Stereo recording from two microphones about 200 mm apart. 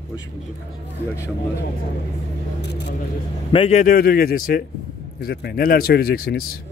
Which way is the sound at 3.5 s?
30° left (ahead or behind).